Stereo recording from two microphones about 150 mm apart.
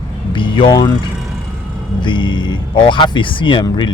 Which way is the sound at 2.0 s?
30° left (ahead or behind).